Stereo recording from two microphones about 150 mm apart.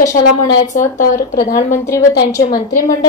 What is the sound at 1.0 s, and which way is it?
Speech, 70° left (ahead or behind).